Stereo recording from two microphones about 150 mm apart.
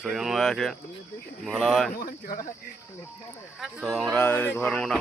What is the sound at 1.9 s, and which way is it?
Speech, 70° left (ahead or behind).